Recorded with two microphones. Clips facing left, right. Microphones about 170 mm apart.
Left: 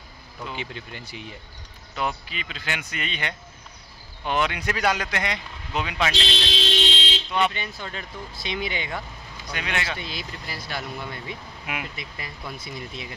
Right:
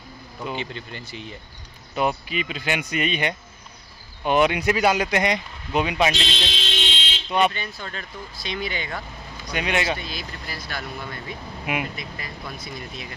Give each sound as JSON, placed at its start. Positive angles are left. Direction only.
{"t": 0.6, "sound": "speech", "side_deg": 10}
{"t": 2.0, "sound": "speech", "side_deg": -15}
{"t": 6.1, "sound": "fire alarm", "side_deg": 35}
{"t": 7.2, "sound": "speech", "side_deg": -15}
{"t": 7.5, "sound": "speech", "side_deg": 15}
{"t": 9.5, "sound": "speech", "side_deg": -15}
{"t": 9.9, "sound": "speech", "side_deg": 25}
{"t": 11.6, "sound": "speech", "side_deg": -20}
{"t": 12.0, "sound": "speech", "side_deg": 25}